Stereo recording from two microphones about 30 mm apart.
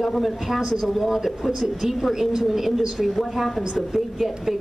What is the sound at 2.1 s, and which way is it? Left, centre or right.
Speech, centre.